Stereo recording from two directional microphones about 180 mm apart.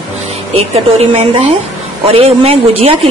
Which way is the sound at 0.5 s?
35° right (ahead or behind).